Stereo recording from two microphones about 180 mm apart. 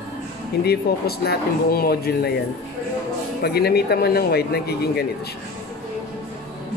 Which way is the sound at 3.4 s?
60° left (ahead or behind).